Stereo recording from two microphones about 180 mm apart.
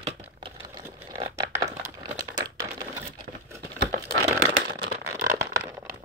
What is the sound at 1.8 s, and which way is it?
Typing, 15° right (ahead or behind).